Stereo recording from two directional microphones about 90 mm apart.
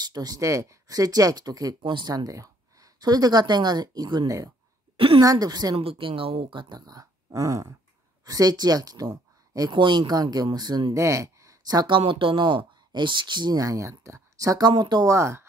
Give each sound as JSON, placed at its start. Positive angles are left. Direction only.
{"t": 0.0, "sound": "speech", "side_deg": -45}
{"t": 1.9, "sound": "speech", "side_deg": -55}
{"t": 4.9, "sound": "a sound", "side_deg": -90}
{"t": 5.2, "sound": "speech", "side_deg": -45}
{"t": 5.8, "sound": "speech", "side_deg": -90}
{"t": 6.9, "sound": "a sound", "side_deg": -40}
{"t": 8.3, "sound": "speech", "side_deg": -45}
{"t": 9.7, "sound": "speech", "side_deg": -60}
{"t": 10.9, "sound": "speech", "side_deg": -35}
{"t": 11.9, "sound": "speech", "side_deg": -70}
{"t": 13.6, "sound": "speech", "side_deg": -35}
{"t": 14.7, "sound": "speech", "side_deg": -55}
{"t": 15.0, "sound": "speech", "side_deg": -30}